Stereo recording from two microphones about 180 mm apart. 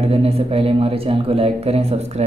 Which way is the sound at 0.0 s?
35° right (ahead or behind).